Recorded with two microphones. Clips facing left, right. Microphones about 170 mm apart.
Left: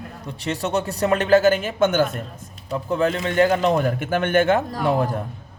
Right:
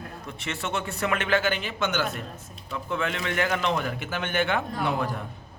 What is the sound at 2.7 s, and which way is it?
Speech, 40° left (ahead or behind).